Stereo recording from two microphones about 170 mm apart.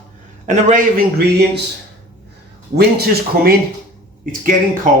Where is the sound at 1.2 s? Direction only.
80° right.